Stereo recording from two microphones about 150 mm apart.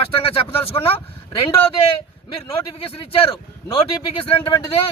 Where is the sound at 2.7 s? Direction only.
35° left (ahead or behind).